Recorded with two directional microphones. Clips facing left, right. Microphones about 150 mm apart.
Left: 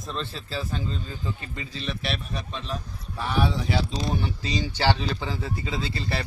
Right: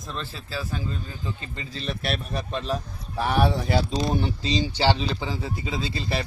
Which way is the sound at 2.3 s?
55° right (ahead or behind).